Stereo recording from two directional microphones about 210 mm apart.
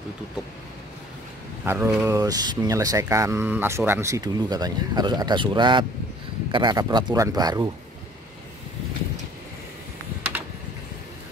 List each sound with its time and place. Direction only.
1.6 s speech: 10° right (ahead or behind)